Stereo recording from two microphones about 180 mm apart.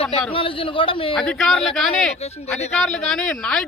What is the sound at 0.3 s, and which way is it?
Speech, 30° left (ahead or behind).